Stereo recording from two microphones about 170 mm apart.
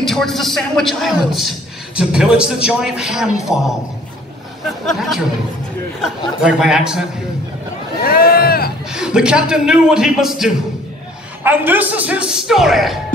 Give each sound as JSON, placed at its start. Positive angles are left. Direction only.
{"t": 0.0, "sound": "a man's voice", "side_deg": 0}
{"t": 6.4, "sound": "a man's voice", "side_deg": -5}
{"t": 8.0, "sound": "a sound", "side_deg": 60}
{"t": 8.9, "sound": "a man's voice", "side_deg": -5}